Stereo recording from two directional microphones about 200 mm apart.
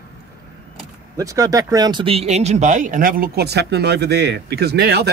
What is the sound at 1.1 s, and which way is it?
Speech, 15° right (ahead or behind).